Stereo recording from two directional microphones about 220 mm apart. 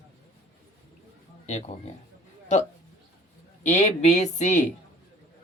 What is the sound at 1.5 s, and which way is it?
Speech, 35° left (ahead or behind).